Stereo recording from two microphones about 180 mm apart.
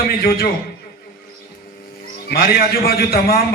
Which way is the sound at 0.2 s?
60° left (ahead or behind).